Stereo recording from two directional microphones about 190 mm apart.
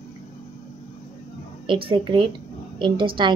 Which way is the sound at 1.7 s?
25° right (ahead or behind).